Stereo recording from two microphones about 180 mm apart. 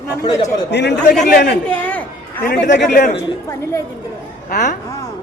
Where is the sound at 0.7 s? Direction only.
70° left (ahead or behind).